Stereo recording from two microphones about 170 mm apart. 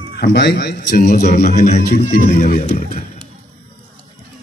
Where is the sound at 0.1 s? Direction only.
80° left.